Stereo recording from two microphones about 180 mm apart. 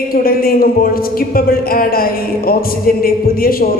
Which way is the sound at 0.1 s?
55° left (ahead or behind).